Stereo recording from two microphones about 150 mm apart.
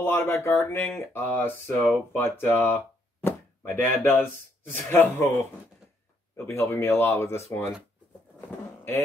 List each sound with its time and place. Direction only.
0.0 s speech: 15° left (ahead or behind)
3.3 s chop: 10° left (ahead or behind)
4.0 s speech: 15° left (ahead or behind)
8.4 s a sound: 15° left (ahead or behind)